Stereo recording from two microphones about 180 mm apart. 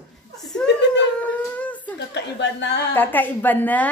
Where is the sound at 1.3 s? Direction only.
10° left (ahead or behind).